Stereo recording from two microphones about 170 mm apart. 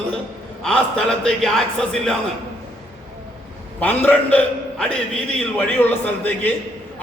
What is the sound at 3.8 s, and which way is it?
A man's voice, 10° left (ahead or behind).